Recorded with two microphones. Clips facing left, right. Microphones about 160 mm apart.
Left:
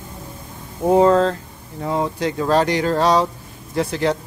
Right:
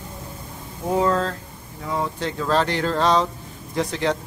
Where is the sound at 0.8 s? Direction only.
40° left (ahead or behind).